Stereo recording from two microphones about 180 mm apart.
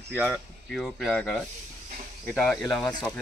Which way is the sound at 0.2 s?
5° left (ahead or behind).